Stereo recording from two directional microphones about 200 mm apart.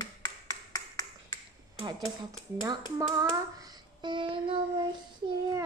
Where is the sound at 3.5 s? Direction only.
20° right (ahead or behind).